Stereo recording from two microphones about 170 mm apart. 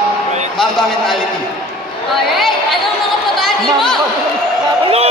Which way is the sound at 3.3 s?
Centre (ahead or behind).